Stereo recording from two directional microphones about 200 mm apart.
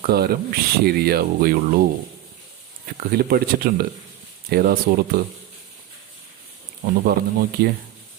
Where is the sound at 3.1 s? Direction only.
50° right (ahead or behind).